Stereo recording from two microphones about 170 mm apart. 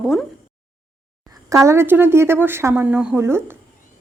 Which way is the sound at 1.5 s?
15° right (ahead or behind).